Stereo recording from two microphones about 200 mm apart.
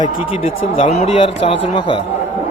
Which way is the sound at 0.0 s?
30° left (ahead or behind).